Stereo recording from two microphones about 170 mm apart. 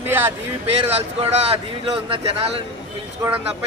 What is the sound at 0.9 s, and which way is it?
Speech, 35° right (ahead or behind).